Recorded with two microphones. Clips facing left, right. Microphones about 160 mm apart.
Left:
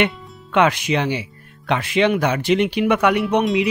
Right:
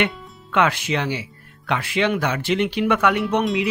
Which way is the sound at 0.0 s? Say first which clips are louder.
Left 3 dB; 20° left (ahead or behind).